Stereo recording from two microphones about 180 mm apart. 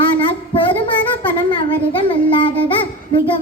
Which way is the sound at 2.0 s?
30° left (ahead or behind).